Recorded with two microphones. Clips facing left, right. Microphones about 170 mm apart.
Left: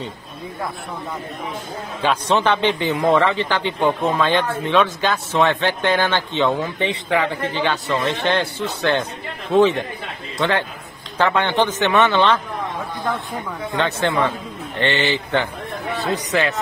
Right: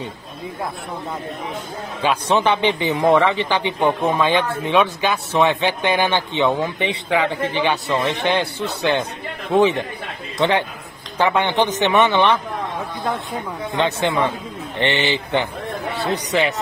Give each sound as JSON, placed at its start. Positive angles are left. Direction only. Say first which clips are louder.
{"t": 2.0, "sound": "speech", "louder": "even", "side_deg": -10}
{"t": 11.1, "sound": "speech", "louder": "even", "side_deg": -15}
{"t": 13.7, "sound": "speech", "louder": "even", "side_deg": -15}